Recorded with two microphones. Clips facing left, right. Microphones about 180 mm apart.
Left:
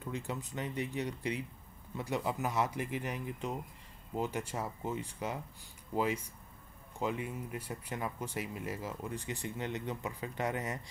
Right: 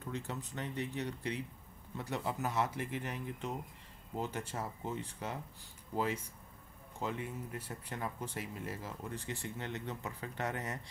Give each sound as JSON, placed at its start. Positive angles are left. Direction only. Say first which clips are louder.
{"t": 0.0, "sound": "speech", "louder": "left 2 dB", "side_deg": 10}
{"t": 7.0, "sound": "speech", "louder": "left 3 dB", "side_deg": 15}